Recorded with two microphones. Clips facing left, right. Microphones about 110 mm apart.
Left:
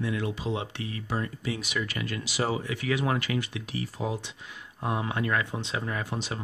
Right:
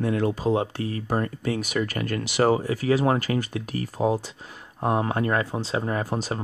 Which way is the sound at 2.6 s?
40° right (ahead or behind).